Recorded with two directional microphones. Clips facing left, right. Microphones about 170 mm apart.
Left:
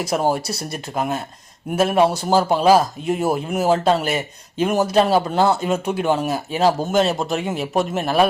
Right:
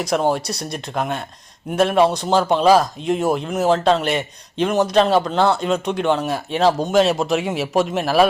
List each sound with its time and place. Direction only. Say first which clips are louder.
0.0 s speech: right 1 dB; 5° left (ahead or behind)